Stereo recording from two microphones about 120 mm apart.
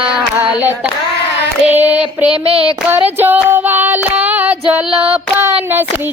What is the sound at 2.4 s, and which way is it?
Child singing, 55° right (ahead or behind).